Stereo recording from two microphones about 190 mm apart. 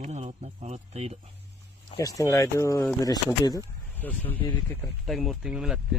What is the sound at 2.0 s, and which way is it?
Speech, 15° left (ahead or behind).